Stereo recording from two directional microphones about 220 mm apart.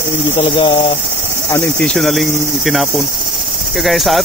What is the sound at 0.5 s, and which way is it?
Speech, 20° left (ahead or behind).